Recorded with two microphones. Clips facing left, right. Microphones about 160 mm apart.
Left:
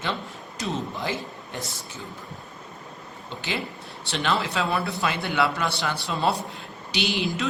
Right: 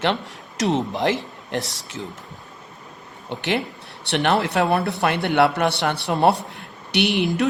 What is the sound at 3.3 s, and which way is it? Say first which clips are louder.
A man's voice: right 7 dB; 70° right (ahead or behind).